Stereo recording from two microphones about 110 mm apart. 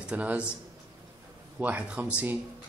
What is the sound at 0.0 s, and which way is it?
Speech, 10° right (ahead or behind).